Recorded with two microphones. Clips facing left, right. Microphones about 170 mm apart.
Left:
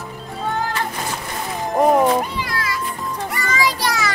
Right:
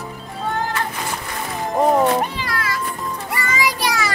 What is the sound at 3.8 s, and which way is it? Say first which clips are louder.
Music: even; 10° right (ahead or behind).